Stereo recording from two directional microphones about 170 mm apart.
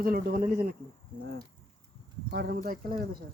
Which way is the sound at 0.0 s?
60° right (ahead or behind).